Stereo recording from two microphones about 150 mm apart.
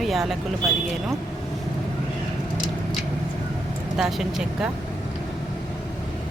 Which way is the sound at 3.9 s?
5° right (ahead or behind).